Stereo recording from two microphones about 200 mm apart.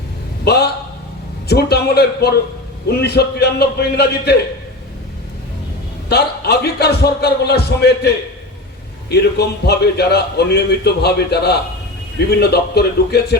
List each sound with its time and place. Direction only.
0.4 s a sound: 55° left (ahead or behind)
1.5 s a man's voice: 55° left (ahead or behind)
6.1 s a man's voice: 55° left (ahead or behind)